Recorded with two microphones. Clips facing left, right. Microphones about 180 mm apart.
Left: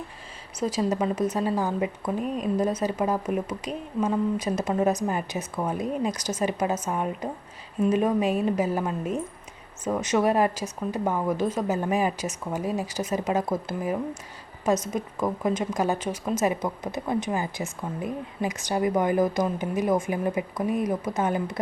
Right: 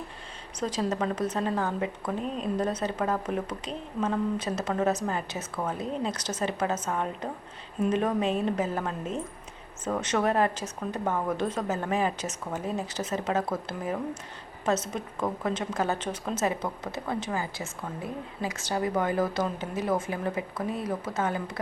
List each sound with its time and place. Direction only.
0.6 s a woman's voice: 10° left (ahead or behind)